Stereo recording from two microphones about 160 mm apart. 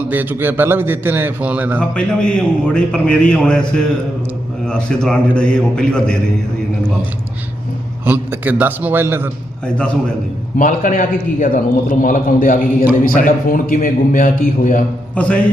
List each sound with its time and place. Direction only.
0.0 s a man's voice: 10° right (ahead or behind)
2.0 s a man's voice: 5° left (ahead or behind)
4.6 s a man's voice: 5° left (ahead or behind)
8.0 s a man's voice: 10° right (ahead or behind)
9.6 s a man's voice: 5° left (ahead or behind)
10.6 s a man's voice: 55° left (ahead or behind)
15.1 s music: 10° left (ahead or behind)